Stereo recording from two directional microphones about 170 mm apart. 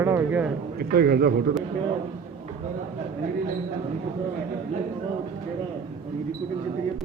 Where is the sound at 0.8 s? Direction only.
65° right (ahead or behind).